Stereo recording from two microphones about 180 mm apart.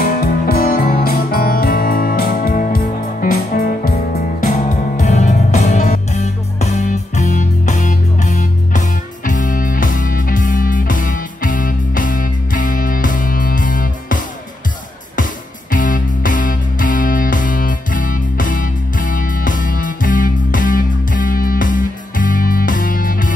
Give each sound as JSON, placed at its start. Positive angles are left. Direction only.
{"t": 0.0, "sound": "music", "side_deg": 55}
{"t": 15.7, "sound": "music", "side_deg": 50}